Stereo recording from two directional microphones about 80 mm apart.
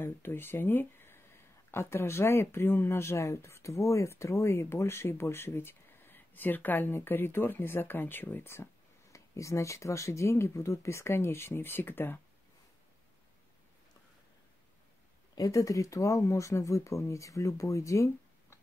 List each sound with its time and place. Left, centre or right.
0.0 s speech: left
9.1 s speech: left
15.3 s speech: left